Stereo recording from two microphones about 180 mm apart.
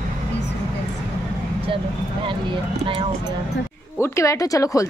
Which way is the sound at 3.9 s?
15° left (ahead or behind).